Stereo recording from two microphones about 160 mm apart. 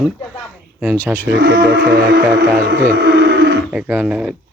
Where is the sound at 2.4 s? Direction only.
65° right (ahead or behind); by 3.6 s 90° right.